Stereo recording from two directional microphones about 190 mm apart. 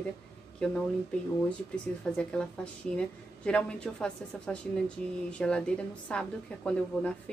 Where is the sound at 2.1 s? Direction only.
5° left (ahead or behind).